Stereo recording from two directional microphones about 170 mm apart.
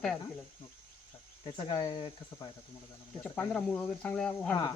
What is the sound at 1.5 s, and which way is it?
Speech, 25° left (ahead or behind).